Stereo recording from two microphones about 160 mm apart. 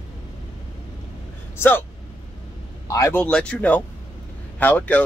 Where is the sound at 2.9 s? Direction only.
15° left (ahead or behind).